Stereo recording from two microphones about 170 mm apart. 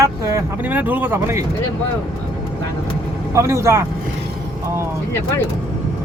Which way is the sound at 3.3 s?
15° right (ahead or behind).